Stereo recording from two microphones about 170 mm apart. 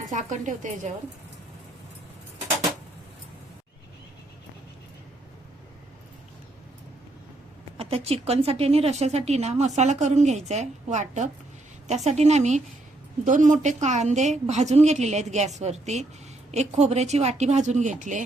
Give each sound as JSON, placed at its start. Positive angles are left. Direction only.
{"t": 0.1, "sound": "a woman's voice", "side_deg": -45}
{"t": 7.8, "sound": "a woman's voice", "side_deg": -35}